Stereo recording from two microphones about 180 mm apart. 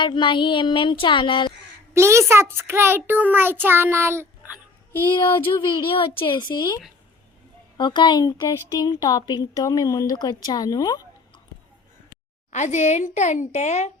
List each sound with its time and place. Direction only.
0.0 s speech: 25° left (ahead or behind)
1.9 s a child's voice: 15° right (ahead or behind)
2.3 s child singing: 15° right (ahead or behind)
5.1 s speech: 25° left (ahead or behind)
12.5 s a woman's voice: 40° left (ahead or behind)